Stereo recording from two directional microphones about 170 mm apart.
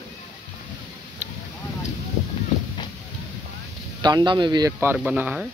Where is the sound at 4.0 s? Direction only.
25° right (ahead or behind).